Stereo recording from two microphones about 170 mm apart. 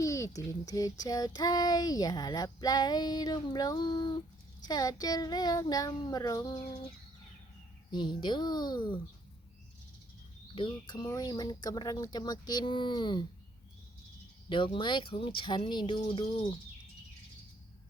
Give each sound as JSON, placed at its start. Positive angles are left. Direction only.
{"t": 0.0, "sound": "child singing", "side_deg": 20}
{"t": 7.9, "sound": "child singing", "side_deg": 25}
{"t": 10.5, "sound": "child singing", "side_deg": 30}
{"t": 14.5, "sound": "child singing", "side_deg": 30}
{"t": 16.0, "sound": "speech", "side_deg": 35}